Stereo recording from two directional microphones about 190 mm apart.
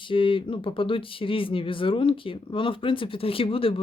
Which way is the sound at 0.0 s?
25° left (ahead or behind).